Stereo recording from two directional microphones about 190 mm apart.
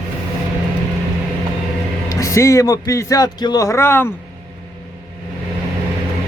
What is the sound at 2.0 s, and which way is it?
A man's voice, 15° left (ahead or behind).